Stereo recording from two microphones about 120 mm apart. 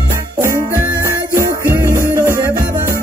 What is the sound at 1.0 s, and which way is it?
Music, 25° right (ahead or behind).